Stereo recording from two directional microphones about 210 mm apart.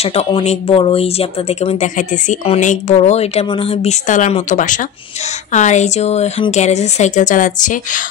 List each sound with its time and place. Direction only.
0.0 s speech: 30° left (ahead or behind)